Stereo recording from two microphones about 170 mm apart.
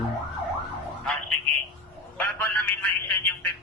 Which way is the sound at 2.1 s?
10° left (ahead or behind).